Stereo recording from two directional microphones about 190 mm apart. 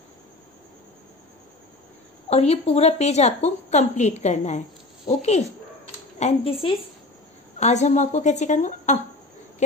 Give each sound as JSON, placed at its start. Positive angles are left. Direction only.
{"t": 2.2, "sound": "a woman's voice", "side_deg": 35}